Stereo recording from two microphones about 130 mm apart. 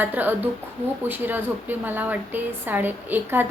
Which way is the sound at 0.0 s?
15° right (ahead or behind).